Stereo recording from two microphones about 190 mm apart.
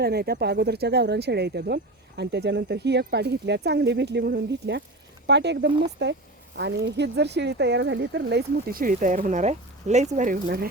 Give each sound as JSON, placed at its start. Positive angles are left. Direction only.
{"t": 0.0, "sound": "speech", "side_deg": -55}